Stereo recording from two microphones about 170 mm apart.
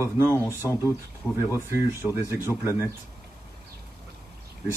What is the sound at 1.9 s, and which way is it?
Speech, 15° right (ahead or behind).